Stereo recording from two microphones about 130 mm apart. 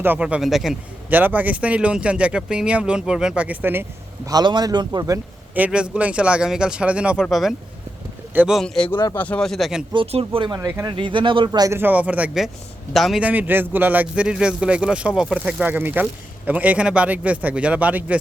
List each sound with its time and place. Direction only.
0.0 s speech: 10° right (ahead or behind)
1.1 s speech: 15° right (ahead or behind)
4.3 s a man's voice: 30° right (ahead or behind)
5.5 s speech: 10° right (ahead or behind)
9.9 s a man's voice: 45° right (ahead or behind)
10.6 s speech: 20° right (ahead or behind)
10.9 s a man's voice: 40° right (ahead or behind)
11.7 s speech: 15° right (ahead or behind)
13.2 s speech: 15° right (ahead or behind)